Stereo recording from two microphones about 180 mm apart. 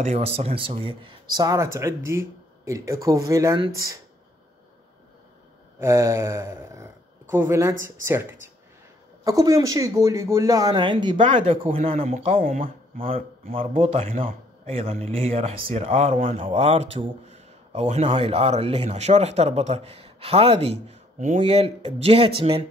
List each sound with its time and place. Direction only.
0.0 s speech: 35° right (ahead or behind)
5.8 s speech: 15° right (ahead or behind); by 12.4 s 35° right (ahead or behind)
12.4 s speech: 50° right (ahead or behind)
13.5 s speech: 30° right (ahead or behind)